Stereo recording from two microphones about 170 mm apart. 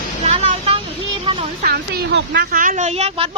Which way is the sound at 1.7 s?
80° right.